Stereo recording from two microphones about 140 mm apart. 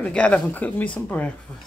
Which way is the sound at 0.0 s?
10° left (ahead or behind).